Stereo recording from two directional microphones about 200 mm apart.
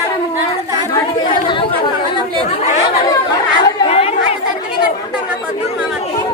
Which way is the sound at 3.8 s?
30° left (ahead or behind).